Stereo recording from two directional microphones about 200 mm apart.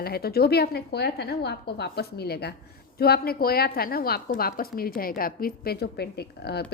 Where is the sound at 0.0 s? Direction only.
50° left (ahead or behind).